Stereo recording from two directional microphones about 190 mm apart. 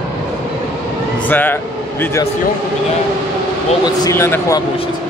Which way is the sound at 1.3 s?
10° left (ahead or behind).